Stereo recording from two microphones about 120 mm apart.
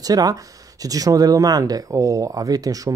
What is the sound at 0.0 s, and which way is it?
Speech, 30° right (ahead or behind).